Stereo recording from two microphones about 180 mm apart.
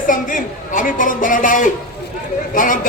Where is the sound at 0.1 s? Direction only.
50° left (ahead or behind).